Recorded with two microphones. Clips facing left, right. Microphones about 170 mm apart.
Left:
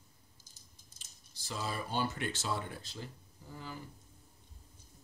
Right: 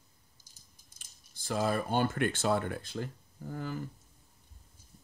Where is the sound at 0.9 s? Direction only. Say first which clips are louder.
Left 1 dB; 55° right (ahead or behind).